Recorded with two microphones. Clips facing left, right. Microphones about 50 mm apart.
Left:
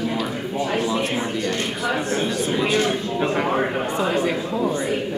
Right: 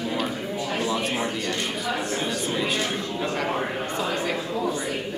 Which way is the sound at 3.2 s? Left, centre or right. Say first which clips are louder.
Left 5 dB; left.